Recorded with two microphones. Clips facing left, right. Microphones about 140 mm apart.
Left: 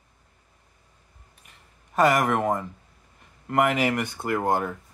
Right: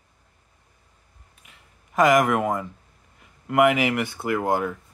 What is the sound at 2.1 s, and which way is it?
Speech, 10° right (ahead or behind).